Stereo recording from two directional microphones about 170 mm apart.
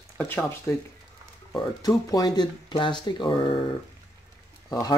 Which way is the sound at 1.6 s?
25° left (ahead or behind).